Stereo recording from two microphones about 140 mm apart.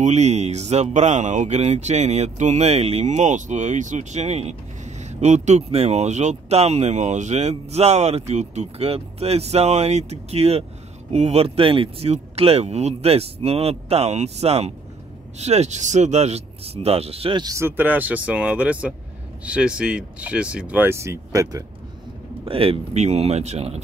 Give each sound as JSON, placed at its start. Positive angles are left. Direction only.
{"t": 0.0, "sound": "speech", "side_deg": -55}
{"t": 17.6, "sound": "speech", "side_deg": -15}
{"t": 22.4, "sound": "speech", "side_deg": -45}